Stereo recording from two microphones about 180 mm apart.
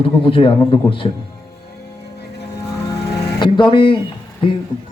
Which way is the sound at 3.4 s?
25° left (ahead or behind).